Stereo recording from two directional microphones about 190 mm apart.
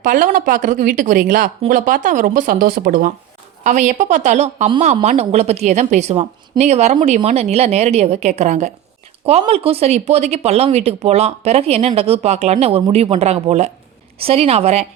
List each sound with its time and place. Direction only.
0.0 s speech: 40° right (ahead or behind)